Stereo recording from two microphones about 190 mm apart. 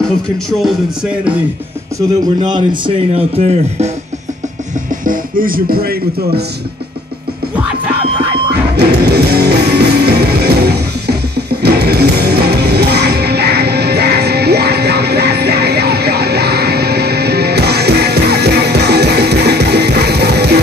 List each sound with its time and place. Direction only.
0.5 s speech: centre (ahead or behind)
2.0 s speech: 25° right (ahead or behind)
5.0 s speech: 45° right (ahead or behind)
8.7 s music: 60° right (ahead or behind)